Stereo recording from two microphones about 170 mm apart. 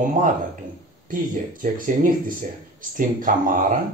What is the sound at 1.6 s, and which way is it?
Speech, 50° right (ahead or behind).